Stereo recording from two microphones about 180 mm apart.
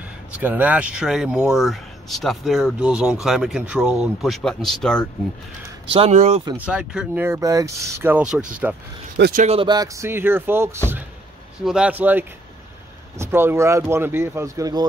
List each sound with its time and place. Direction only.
0.3 s speech: 10° right (ahead or behind)
5.9 s speech: 35° right (ahead or behind)
6.5 s speech: 5° right (ahead or behind)
9.2 s speech: 50° right (ahead or behind)
9.5 s speech: 25° right (ahead or behind)